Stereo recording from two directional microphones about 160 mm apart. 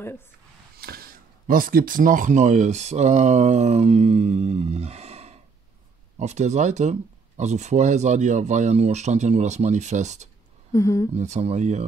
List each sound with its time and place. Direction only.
0.7 s speech: 70° right (ahead or behind); by 10.3 s 45° right (ahead or behind)
10.7 s speech: 20° left (ahead or behind)
11.1 s speech: 45° right (ahead or behind)